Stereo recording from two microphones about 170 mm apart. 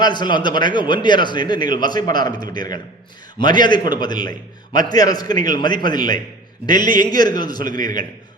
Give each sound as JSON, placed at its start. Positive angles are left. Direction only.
{"t": 0.0, "sound": "a man's voice", "side_deg": 25}